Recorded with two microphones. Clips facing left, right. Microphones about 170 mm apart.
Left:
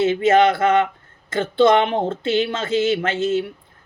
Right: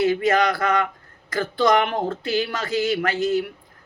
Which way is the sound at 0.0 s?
25° left (ahead or behind).